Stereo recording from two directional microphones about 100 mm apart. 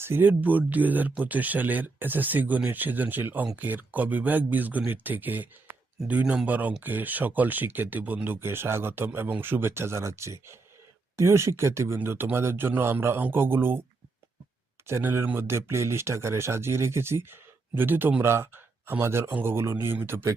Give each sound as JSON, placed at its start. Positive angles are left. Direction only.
{"t": 0.0, "sound": "speech", "side_deg": -20}
{"t": 14.8, "sound": "speech", "side_deg": -25}